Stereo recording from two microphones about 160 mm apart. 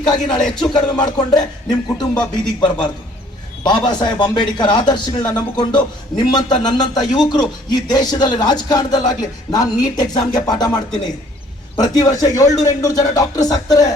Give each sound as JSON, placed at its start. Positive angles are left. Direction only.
{"t": 0.0, "sound": "a man's voice", "side_deg": 25}
{"t": 3.8, "sound": "a man's voice", "side_deg": 25}
{"t": 11.8, "sound": "a man's voice", "side_deg": 20}